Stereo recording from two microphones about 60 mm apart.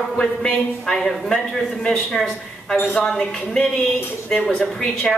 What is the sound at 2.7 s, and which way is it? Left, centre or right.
Speech, left.